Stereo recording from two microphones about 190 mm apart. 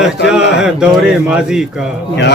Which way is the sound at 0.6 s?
5° right (ahead or behind).